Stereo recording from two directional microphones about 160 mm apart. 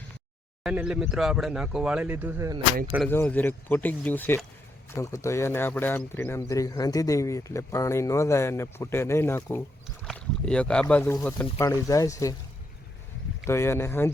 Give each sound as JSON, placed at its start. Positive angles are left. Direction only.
{"t": 0.6, "sound": "speech", "side_deg": -5}
{"t": 3.1, "sound": "speech", "side_deg": 10}
{"t": 10.0, "sound": "speech", "side_deg": 5}
{"t": 13.5, "sound": "speech", "side_deg": 15}